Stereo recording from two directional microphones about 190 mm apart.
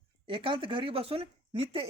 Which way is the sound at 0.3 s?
25° right (ahead or behind).